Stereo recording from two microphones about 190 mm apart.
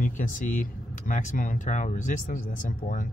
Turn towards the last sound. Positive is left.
turn(degrees=45)  # may be behind; listen again after turning